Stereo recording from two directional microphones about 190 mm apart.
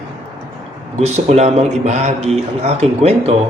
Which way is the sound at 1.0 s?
35° right (ahead or behind).